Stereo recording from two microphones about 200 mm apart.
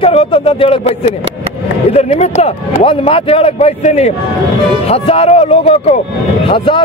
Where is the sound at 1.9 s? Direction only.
30° left (ahead or behind).